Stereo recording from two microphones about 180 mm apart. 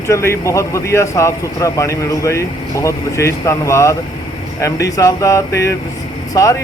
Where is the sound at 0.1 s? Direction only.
15° left (ahead or behind).